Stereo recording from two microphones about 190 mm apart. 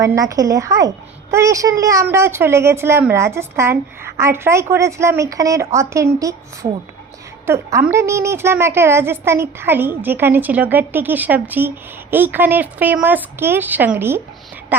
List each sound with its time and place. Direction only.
0.0 s a woman's voice: 15° right (ahead or behind)